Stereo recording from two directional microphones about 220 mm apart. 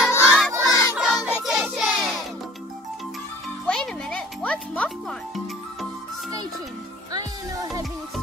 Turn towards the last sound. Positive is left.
turn(degrees=-15)  # may be behind; listen again after turning